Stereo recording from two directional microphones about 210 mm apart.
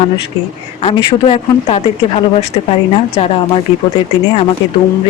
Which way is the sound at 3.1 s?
30° left (ahead or behind).